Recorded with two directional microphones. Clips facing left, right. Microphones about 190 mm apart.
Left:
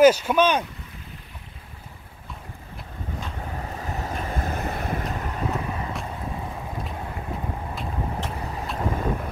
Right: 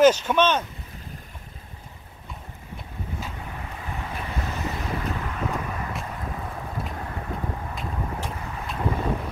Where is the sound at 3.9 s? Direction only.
40° left (ahead or behind).